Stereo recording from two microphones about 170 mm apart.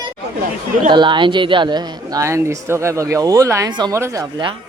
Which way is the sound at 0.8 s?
30° right (ahead or behind).